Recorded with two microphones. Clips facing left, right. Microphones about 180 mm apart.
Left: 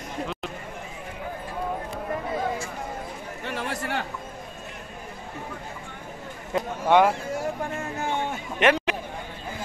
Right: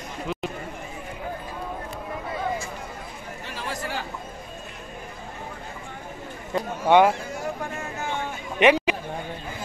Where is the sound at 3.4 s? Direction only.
60° left (ahead or behind).